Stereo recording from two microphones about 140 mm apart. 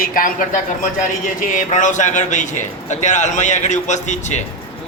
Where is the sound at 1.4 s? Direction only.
65° left (ahead or behind).